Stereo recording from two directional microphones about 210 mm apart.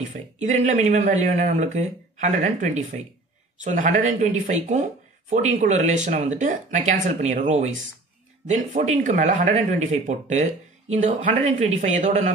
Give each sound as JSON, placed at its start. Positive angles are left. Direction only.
{"t": 0.0, "sound": "speech", "side_deg": -35}